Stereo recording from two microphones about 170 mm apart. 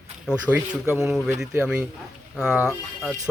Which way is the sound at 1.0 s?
5° right (ahead or behind).